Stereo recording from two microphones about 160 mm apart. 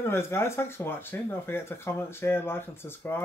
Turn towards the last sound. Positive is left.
turn(degrees=15)  # may be behind; listen again after turning